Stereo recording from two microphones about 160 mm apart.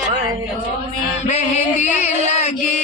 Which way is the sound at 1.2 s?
45° left (ahead or behind).